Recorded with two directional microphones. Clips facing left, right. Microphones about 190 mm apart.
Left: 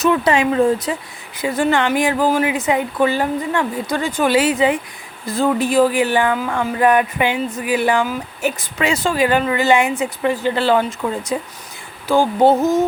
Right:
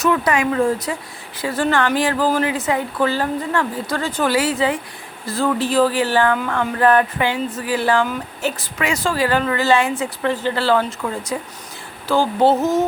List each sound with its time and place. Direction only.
0.0 s speech: 25° left (ahead or behind); by 8.5 s 10° left (ahead or behind)
8.8 s speech: 20° left (ahead or behind)